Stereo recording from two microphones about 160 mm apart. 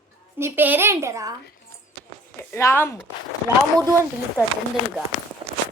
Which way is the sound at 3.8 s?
20° right (ahead or behind).